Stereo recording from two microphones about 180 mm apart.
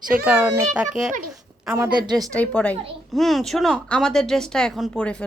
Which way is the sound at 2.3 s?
5° left (ahead or behind).